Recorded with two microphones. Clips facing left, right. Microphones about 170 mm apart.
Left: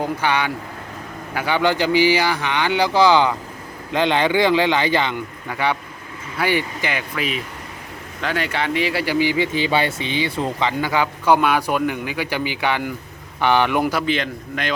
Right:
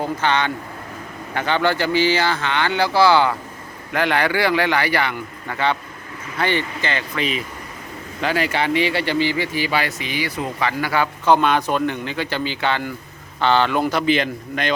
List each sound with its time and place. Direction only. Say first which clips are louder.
0.0 s speech: even; 10° left (ahead or behind)
14.0 s a man's voice: right 3 dB; 5° right (ahead or behind)